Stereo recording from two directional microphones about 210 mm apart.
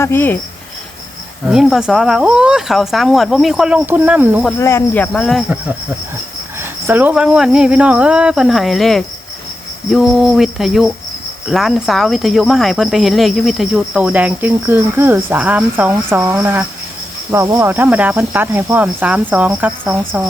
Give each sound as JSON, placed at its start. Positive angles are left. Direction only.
{"t": 0.0, "sound": "speech", "side_deg": 10}
{"t": 1.5, "sound": "speech", "side_deg": 0}
{"t": 4.6, "sound": "speech", "side_deg": 10}
{"t": 6.6, "sound": "speech", "side_deg": -10}